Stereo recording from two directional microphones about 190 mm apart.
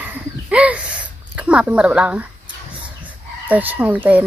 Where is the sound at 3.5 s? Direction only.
10° right (ahead or behind).